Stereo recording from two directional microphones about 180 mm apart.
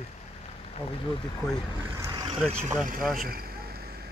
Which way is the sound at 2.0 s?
25° right (ahead or behind).